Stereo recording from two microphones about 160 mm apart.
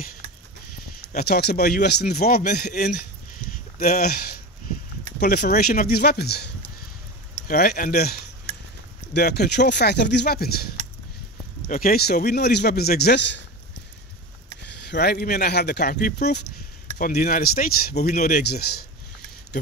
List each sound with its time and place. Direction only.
1.1 s speech: 85° left
2.5 s speech: 85° left
5.3 s speech: 85° left
7.4 s speech: 70° left (ahead or behind)
9.1 s speech: 90° left
11.7 s speech: 65° left (ahead or behind); by 13.4 s 90° left
14.6 s speech: 90° left
17.0 s speech: 65° left (ahead or behind)